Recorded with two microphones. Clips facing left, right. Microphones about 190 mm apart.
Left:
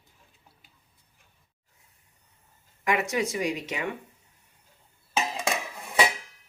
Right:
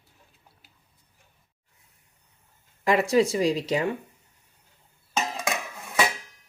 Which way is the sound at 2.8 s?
30° right (ahead or behind).